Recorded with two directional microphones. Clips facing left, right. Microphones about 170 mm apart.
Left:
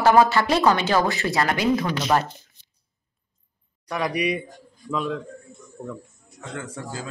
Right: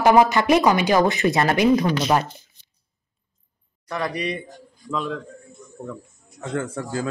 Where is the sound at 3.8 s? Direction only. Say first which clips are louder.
Left 2 dB; 15° left (ahead or behind).